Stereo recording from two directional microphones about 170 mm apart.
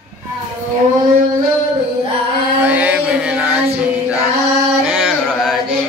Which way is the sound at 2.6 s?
10° right (ahead or behind).